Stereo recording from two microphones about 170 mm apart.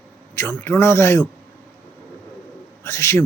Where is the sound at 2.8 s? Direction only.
15° left (ahead or behind).